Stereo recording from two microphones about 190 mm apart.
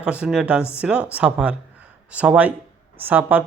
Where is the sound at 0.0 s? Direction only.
5° right (ahead or behind).